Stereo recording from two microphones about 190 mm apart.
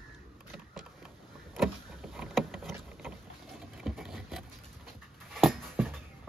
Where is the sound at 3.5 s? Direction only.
Centre (ahead or behind).